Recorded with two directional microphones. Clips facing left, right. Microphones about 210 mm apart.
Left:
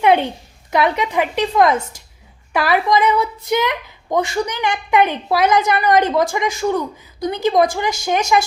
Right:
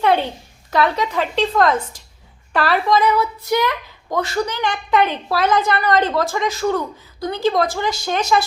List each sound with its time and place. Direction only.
0.0 s a woman's voice: 15° left (ahead or behind)